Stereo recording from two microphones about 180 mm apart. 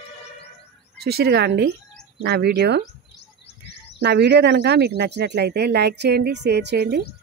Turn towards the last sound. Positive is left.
turn(degrees=-65)  # may be behind; listen again after turning